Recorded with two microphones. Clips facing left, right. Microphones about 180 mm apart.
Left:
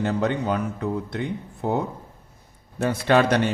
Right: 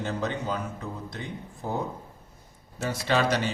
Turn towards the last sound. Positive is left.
turn(degrees=60)  # may be behind; listen again after turning